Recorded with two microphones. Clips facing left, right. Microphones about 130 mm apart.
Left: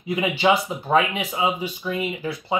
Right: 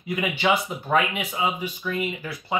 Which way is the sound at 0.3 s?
25° left (ahead or behind).